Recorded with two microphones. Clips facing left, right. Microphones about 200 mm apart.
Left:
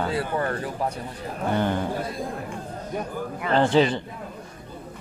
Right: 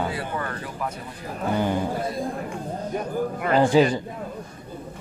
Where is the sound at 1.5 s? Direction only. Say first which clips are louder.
Right 1 dB; 10° right (ahead or behind).